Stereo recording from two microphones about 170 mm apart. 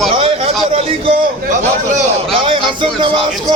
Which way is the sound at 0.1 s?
35° right (ahead or behind).